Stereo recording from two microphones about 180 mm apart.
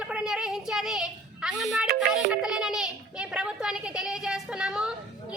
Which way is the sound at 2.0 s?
5° right (ahead or behind).